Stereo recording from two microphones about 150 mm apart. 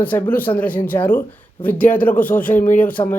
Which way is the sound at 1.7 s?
10° left (ahead or behind).